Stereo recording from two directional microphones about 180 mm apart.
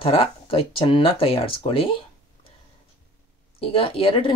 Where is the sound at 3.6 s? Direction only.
30° left (ahead or behind).